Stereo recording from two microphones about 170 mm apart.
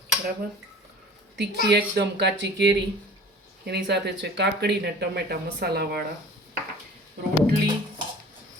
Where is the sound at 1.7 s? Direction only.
80° right.